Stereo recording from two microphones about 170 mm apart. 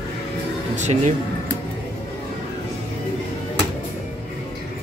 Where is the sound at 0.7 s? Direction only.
45° right (ahead or behind).